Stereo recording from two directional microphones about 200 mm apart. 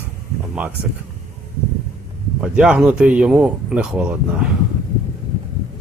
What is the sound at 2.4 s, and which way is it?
Speech, 5° right (ahead or behind).